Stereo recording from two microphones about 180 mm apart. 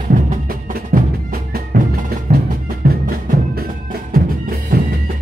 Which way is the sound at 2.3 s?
45° right (ahead or behind).